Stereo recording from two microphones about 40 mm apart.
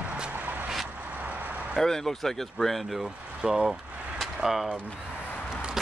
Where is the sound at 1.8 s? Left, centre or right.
Centre.